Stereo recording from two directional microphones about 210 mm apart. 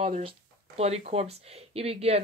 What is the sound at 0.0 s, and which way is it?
Speech, 25° right (ahead or behind).